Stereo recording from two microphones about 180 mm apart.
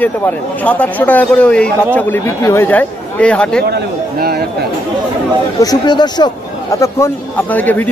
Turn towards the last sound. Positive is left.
turn(degrees=10)  # may be behind; listen again after turning